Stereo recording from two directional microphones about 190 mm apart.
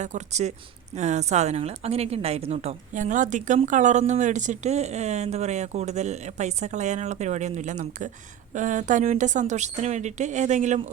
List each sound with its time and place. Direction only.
0.0 s a woman's voice: 35° right (ahead or behind)